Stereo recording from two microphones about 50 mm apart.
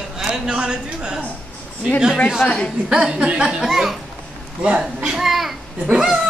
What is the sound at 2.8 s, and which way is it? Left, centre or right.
A woman's voice, centre.